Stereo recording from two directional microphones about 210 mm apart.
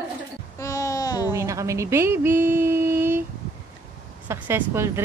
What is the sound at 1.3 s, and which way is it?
Speech, 15° right (ahead or behind).